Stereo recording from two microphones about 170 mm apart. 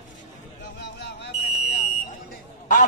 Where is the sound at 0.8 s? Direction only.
90° left.